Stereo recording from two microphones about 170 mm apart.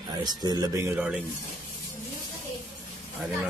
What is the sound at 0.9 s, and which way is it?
Speech, 5° right (ahead or behind).